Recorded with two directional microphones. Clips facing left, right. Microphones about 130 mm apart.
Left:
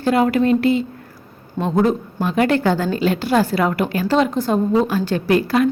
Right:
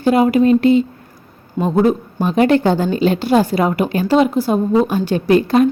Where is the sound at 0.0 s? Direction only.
15° right (ahead or behind).